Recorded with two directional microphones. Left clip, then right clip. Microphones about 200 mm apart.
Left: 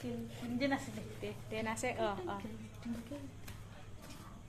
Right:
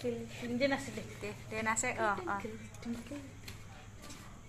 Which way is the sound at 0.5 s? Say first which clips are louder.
Right 3 dB; 55° right (ahead or behind).